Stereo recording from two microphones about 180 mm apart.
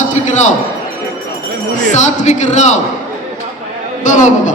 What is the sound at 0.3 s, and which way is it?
Speech, 40° left (ahead or behind).